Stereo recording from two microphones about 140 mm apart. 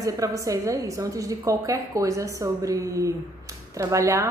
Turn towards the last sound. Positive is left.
turn(degrees=-20)  # may be behind; listen again after turning